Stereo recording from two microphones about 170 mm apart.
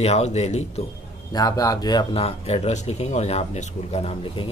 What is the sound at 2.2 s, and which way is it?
Speech, 35° left (ahead or behind).